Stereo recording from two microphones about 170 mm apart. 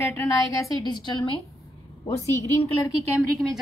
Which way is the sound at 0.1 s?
20° left (ahead or behind).